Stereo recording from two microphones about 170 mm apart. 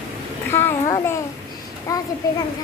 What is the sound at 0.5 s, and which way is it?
A child's voice, 15° left (ahead or behind).